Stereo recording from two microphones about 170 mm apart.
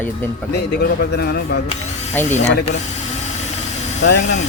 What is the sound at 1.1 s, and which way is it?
Speech, 70° left (ahead or behind).